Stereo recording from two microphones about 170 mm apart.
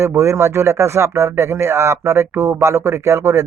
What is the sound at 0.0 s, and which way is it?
Speech, 15° right (ahead or behind).